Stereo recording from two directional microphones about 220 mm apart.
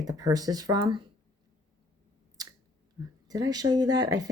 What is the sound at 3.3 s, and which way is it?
Speech, 15° right (ahead or behind).